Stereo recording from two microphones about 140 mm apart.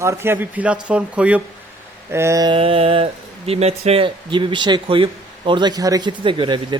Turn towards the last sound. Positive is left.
turn(degrees=-35)  # may be behind; listen again after turning